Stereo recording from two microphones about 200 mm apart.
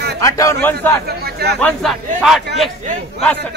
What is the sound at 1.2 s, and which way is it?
Speech, 55° right (ahead or behind).